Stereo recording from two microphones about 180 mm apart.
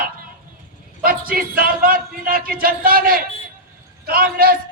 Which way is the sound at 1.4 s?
55° right (ahead or behind).